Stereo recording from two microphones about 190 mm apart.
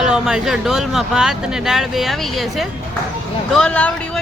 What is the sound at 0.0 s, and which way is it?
Speech, centre (ahead or behind).